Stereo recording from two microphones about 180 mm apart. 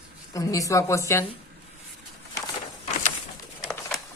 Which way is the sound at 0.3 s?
20° left (ahead or behind).